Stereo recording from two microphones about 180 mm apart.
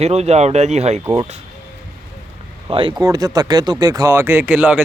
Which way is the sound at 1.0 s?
25° right (ahead or behind).